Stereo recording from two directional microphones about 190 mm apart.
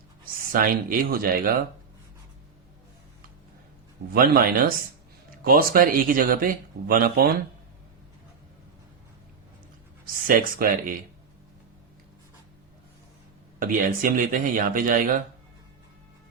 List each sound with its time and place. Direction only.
0.4 s speech: 50° right (ahead or behind)
4.1 s speech: 50° right (ahead or behind)
10.2 s speech: 45° right (ahead or behind)
13.6 s speech: 45° right (ahead or behind)